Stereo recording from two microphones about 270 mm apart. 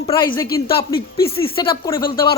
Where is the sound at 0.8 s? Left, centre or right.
Left.